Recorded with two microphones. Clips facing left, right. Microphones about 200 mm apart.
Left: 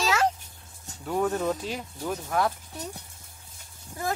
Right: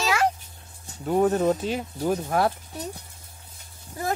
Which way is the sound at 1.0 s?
30° right (ahead or behind).